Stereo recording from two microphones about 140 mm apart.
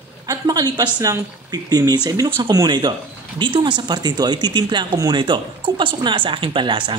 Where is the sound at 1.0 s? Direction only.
25° right (ahead or behind).